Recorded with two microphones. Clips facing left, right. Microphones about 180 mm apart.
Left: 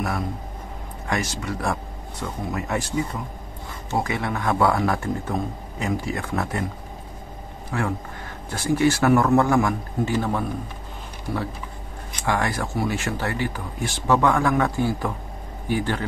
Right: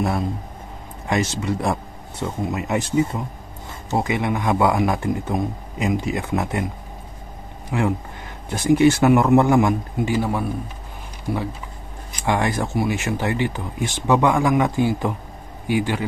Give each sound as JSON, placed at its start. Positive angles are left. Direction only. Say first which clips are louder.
{"t": 1.0, "sound": "speech", "louder": "right 5 dB", "side_deg": -20}
{"t": 7.7, "sound": "speech", "louder": "right 4 dB", "side_deg": -15}